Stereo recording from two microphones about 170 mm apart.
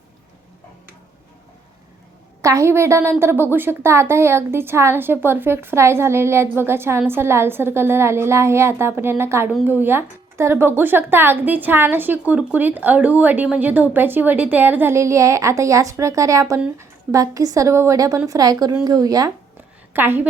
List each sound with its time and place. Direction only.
2.4 s a woman's voice: 20° right (ahead or behind)